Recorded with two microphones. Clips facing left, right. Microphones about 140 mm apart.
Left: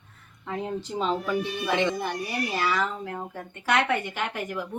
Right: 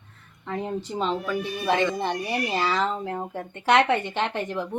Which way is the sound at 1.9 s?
25° right (ahead or behind).